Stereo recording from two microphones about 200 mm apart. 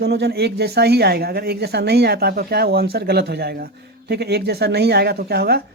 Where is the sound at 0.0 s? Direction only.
55° right (ahead or behind).